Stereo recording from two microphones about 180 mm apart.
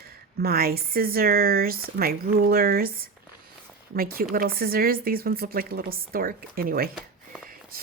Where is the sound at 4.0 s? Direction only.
55° right (ahead or behind).